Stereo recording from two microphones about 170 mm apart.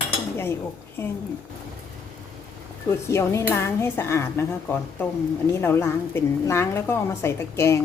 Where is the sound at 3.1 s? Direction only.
15° left (ahead or behind).